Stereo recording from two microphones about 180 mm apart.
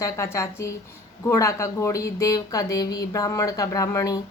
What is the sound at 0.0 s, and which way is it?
A woman's voice, 15° left (ahead or behind).